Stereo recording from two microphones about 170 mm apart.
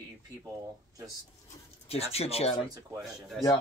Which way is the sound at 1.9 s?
35° left (ahead or behind).